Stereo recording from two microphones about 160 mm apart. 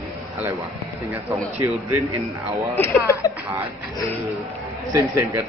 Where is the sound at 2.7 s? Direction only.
15° left (ahead or behind).